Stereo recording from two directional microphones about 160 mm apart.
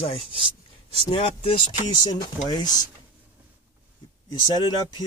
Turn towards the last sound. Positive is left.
turn(degrees=25)  # may be behind; listen again after turning